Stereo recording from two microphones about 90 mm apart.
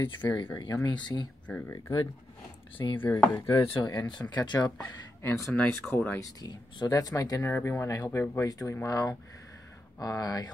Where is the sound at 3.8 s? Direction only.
45° left (ahead or behind).